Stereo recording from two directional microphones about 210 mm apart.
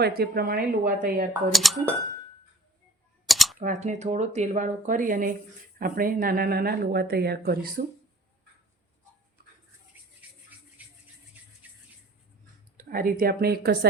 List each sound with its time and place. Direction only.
0.0 s speech: 45° right (ahead or behind)
1.5 s speech: centre (ahead or behind)
3.2 s typing: centre (ahead or behind)
3.6 s speech: 35° right (ahead or behind)
10.2 s a sound: 5° right (ahead or behind)
12.7 s speech: 45° right (ahead or behind)